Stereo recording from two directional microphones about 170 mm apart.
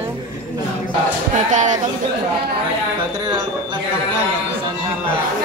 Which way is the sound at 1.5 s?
45° right (ahead or behind).